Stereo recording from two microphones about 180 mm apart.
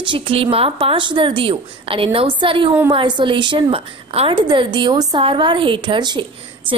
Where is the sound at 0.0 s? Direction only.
30° right (ahead or behind).